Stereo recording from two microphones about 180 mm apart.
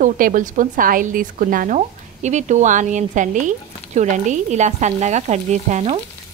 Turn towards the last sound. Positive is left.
turn(degrees=-35)  # may be behind; listen again after turning